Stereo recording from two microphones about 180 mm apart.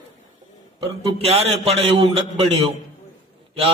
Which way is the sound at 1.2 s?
35° right (ahead or behind).